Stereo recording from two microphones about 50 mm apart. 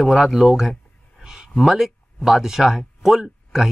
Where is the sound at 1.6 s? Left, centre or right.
Centre.